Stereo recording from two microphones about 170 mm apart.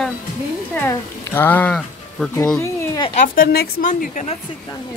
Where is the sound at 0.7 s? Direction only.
15° left (ahead or behind).